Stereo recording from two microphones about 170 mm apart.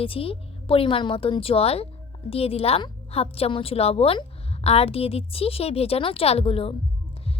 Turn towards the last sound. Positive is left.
turn(degrees=35)  # may be behind; listen again after turning